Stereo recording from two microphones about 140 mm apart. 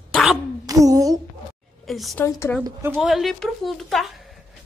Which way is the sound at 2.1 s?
20° left (ahead or behind).